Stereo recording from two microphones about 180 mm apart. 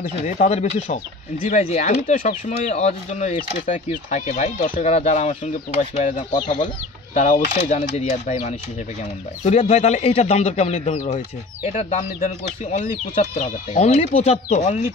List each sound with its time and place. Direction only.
0.2 s speech: 40° left (ahead or behind)
4.8 s speech: 35° left (ahead or behind)